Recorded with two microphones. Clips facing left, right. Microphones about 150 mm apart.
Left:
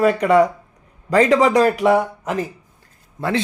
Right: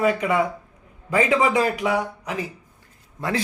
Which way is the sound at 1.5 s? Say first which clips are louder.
Left 7 dB; 45° left (ahead or behind).